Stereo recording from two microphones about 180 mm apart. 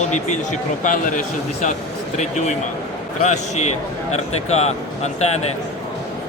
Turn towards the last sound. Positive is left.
turn(degrees=35)  # may be behind; listen again after turning